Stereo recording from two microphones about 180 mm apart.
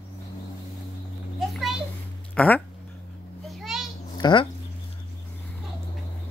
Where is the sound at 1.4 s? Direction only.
Centre (ahead or behind).